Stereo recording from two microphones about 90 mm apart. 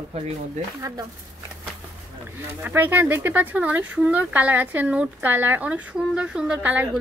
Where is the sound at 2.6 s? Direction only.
20° right (ahead or behind).